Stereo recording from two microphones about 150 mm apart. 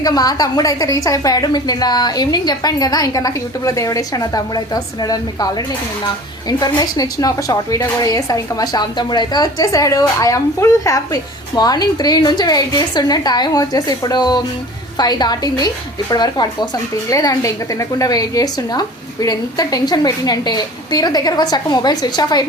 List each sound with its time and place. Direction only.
0.0 s a woman's voice: 25° left (ahead or behind)